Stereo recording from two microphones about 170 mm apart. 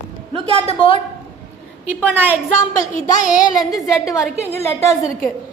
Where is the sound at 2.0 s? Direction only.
10° right (ahead or behind).